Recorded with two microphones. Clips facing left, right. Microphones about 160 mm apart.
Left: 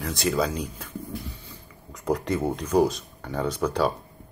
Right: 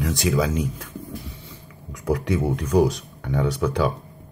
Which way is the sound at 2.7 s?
15° right (ahead or behind).